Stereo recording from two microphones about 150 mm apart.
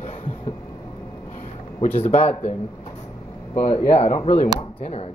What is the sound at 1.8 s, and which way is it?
Speech, 45° left (ahead or behind).